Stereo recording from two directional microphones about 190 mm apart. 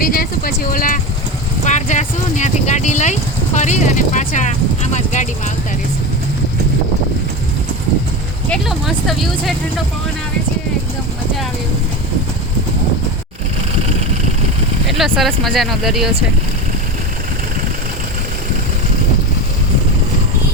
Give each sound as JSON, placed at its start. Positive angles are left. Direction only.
{"t": 0.0, "sound": "vehicle", "side_deg": 50}
{"t": 1.6, "sound": "speech", "side_deg": 40}
{"t": 8.4, "sound": "speech", "side_deg": 0}
{"t": 14.8, "sound": "speech", "side_deg": 0}